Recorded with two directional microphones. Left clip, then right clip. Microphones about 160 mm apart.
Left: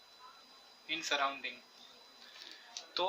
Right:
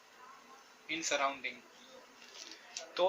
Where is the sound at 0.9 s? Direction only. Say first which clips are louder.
Even; 40° left (ahead or behind).